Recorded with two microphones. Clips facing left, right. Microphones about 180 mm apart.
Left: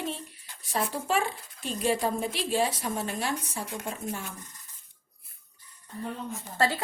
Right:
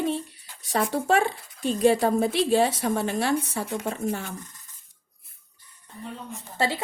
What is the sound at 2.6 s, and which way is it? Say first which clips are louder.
Speech: right 5 dB; 70° right (ahead or behind).